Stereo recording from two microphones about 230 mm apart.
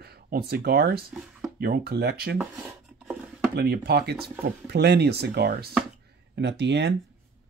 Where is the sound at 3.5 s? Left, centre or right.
Right.